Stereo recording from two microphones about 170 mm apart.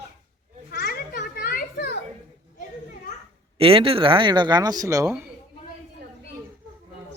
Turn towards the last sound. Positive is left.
turn(degrees=-15)  # may be behind; listen again after turning